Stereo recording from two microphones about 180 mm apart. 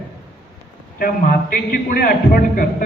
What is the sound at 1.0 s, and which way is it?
A man's voice, 55° left (ahead or behind).